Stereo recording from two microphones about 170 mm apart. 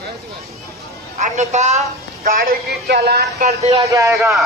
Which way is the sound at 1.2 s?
45° right (ahead or behind).